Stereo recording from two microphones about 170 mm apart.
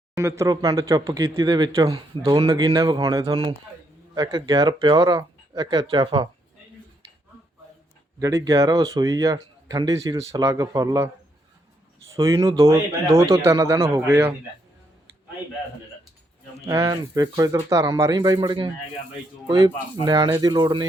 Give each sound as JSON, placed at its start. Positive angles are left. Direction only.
{"t": 0.2, "sound": "speech", "side_deg": -15}
{"t": 8.2, "sound": "speech", "side_deg": -20}
{"t": 12.1, "sound": "a man's voice", "side_deg": -20}
{"t": 16.6, "sound": "speech", "side_deg": -20}